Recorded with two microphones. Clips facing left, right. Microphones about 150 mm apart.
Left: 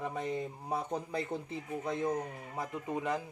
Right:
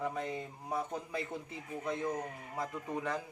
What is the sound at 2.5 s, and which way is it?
Speech, 15° left (ahead or behind).